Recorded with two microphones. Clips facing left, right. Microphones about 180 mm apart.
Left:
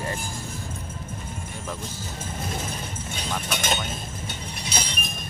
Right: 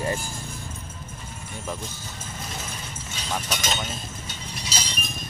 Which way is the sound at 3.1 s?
55° left (ahead or behind).